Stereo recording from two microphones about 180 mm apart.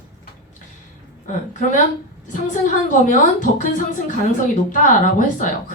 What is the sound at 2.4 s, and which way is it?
A woman's voice, 45° left (ahead or behind).